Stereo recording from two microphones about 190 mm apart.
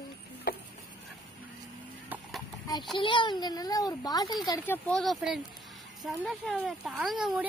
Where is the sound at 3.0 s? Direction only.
25° left (ahead or behind).